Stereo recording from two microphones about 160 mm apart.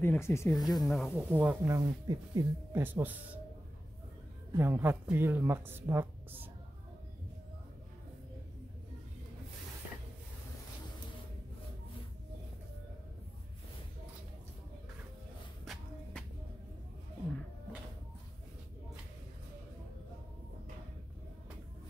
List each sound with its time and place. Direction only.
0.0 s speech: 15° left (ahead or behind)
0.7 s speech: centre (ahead or behind)
1.1 s speech: 10° right (ahead or behind)
1.7 s speech: 25° right (ahead or behind)
2.8 s speech: 10° right (ahead or behind)
4.6 s speech: 15° right (ahead or behind)
15.6 s shuffle: 5° left (ahead or behind)